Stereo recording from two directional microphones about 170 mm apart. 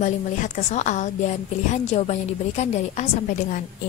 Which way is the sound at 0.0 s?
45° left (ahead or behind).